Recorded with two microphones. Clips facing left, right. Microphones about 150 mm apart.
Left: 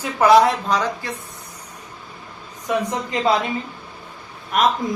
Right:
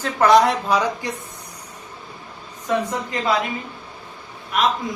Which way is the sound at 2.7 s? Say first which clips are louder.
Even; 15° left (ahead or behind).